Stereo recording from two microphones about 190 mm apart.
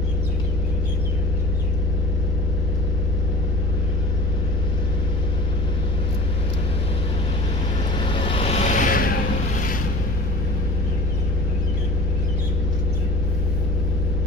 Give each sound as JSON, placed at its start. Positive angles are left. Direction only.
{"t": 8.1, "sound": "vehicle", "side_deg": 25}